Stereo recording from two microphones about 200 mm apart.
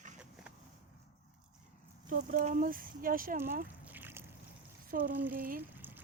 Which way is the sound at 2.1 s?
40° right (ahead or behind).